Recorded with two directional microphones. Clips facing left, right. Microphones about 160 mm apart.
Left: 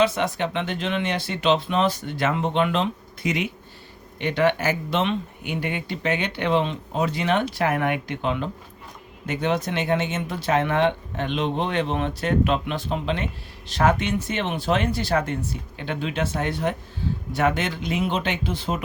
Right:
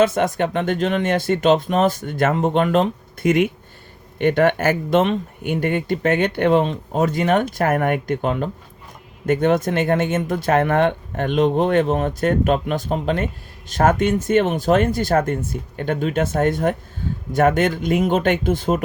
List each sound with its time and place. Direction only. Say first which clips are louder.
0.0 s speech: right 4 dB; 50° right (ahead or behind)